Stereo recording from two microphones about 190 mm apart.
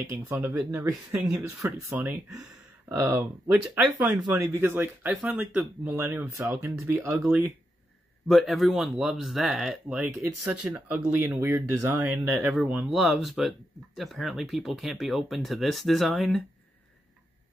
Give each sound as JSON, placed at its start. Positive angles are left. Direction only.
{"t": 0.3, "sound": "speech", "side_deg": -10}